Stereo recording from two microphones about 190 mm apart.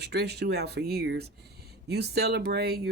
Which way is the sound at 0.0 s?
60° right (ahead or behind).